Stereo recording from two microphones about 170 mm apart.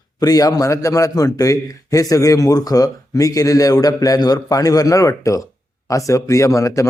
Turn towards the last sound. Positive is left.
turn(degrees=20)  # may be behind; listen again after turning